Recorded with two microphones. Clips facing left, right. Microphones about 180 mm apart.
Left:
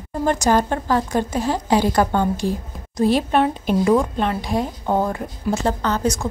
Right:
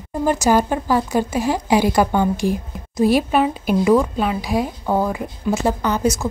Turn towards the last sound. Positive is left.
turn(degrees=-10)  # may be behind; listen again after turning